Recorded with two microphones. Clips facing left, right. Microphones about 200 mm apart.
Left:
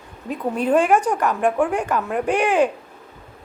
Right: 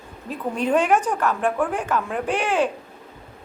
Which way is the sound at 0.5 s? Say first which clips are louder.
Left 2 dB; 5° left (ahead or behind).